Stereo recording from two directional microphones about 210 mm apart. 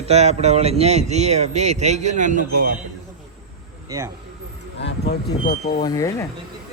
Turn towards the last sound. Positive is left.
turn(degrees=15)  # may be behind; listen again after turning